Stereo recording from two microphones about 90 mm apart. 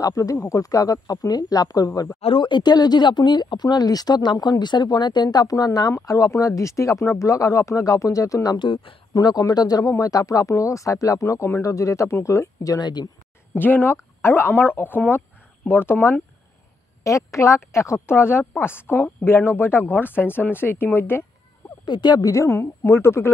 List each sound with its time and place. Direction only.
0.0 s speech: 40° left (ahead or behind)
2.2 s speech: 65° left (ahead or behind); by 8.5 s 40° left (ahead or behind)
8.5 s speech: 70° left (ahead or behind)
9.1 s speech: 45° left (ahead or behind)
12.7 s speech: 50° left (ahead or behind)
13.6 s speech: 20° left (ahead or behind)
21.8 s speech: 55° left (ahead or behind)
22.3 s speech: 35° left (ahead or behind)